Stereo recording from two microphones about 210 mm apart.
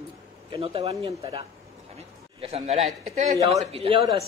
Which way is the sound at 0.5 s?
30° right (ahead or behind).